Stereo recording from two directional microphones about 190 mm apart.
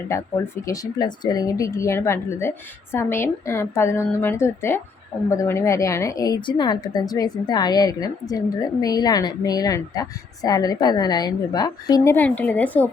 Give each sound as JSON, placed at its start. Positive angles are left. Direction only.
{"t": 0.1, "sound": "a woman's voice", "side_deg": 15}